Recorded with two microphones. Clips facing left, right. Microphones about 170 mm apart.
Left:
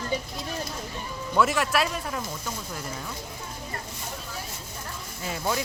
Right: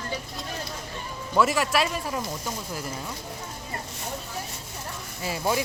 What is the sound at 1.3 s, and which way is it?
Speech, centre (ahead or behind).